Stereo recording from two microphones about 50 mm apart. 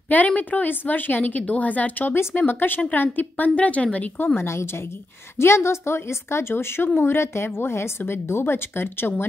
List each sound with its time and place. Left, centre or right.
0.1 s a woman's voice: left
4.4 s a woman's voice: left
6.5 s a woman's voice: left